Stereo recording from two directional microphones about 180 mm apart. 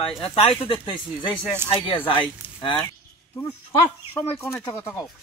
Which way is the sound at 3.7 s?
10° left (ahead or behind).